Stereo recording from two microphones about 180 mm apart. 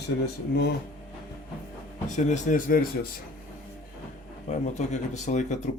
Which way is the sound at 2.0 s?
45° left (ahead or behind).